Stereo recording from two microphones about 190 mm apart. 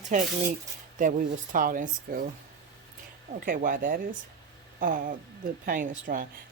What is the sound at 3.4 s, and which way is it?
Speech, 45° right (ahead or behind).